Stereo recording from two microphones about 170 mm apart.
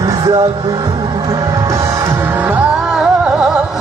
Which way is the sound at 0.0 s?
20° right (ahead or behind).